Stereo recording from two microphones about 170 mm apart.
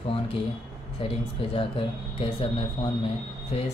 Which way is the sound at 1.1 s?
35° left (ahead or behind).